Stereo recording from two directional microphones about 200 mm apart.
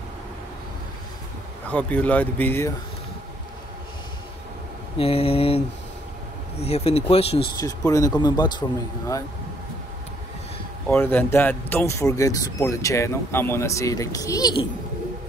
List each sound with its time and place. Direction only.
1.7 s speech: 5° left (ahead or behind)
4.9 s speech: 30° left (ahead or behind)
6.6 s speech: 30° left (ahead or behind)
7.6 s speech: 15° left (ahead or behind)
10.9 s speech: 10° left (ahead or behind)